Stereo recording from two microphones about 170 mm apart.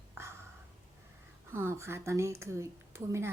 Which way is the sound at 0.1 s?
15° right (ahead or behind).